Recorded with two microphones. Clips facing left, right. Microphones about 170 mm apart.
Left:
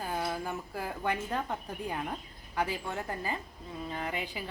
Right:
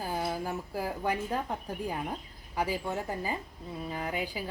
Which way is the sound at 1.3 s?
5° right (ahead or behind).